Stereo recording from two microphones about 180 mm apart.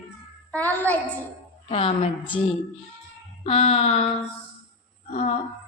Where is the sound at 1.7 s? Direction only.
35° left (ahead or behind).